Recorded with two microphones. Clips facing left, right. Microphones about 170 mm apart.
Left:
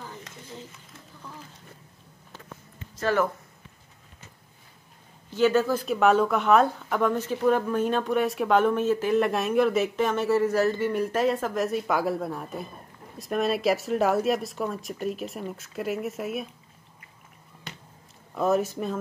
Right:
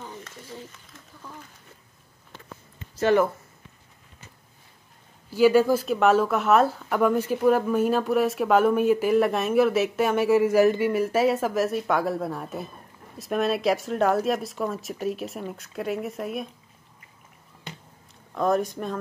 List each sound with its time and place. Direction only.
5.3 s speech: 10° right (ahead or behind)
5.9 s speech: centre (ahead or behind)
18.3 s speech: 5° left (ahead or behind)